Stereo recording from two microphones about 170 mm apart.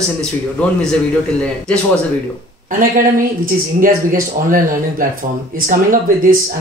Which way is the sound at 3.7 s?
55° right (ahead or behind).